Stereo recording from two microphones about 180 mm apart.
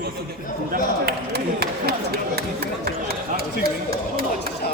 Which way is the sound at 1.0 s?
60° right (ahead or behind).